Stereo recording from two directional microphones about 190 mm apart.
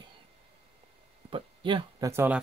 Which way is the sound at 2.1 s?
10° right (ahead or behind).